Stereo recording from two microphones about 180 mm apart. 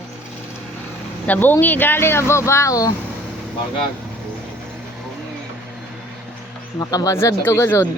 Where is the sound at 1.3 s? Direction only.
10° left (ahead or behind).